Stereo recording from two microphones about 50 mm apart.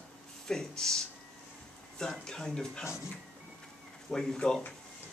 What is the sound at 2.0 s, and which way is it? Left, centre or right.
Speech, centre.